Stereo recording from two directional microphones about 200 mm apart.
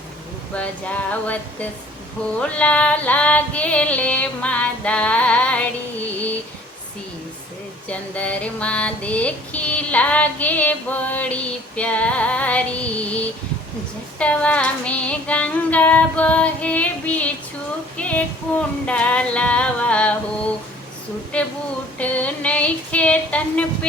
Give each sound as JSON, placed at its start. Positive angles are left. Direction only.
{"t": 0.5, "sound": "female singing", "side_deg": 5}
{"t": 7.9, "sound": "female singing", "side_deg": 5}
{"t": 21.3, "sound": "female singing", "side_deg": 5}